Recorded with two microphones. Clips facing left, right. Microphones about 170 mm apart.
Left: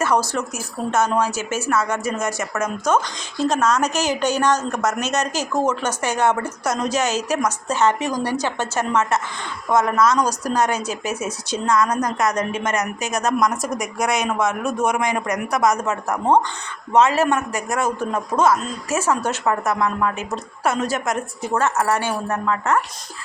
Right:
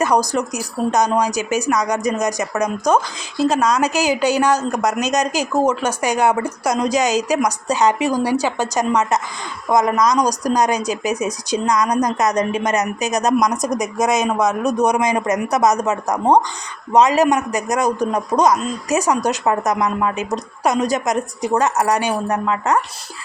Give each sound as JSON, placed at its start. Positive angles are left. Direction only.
{"t": 0.0, "sound": "speech", "side_deg": -15}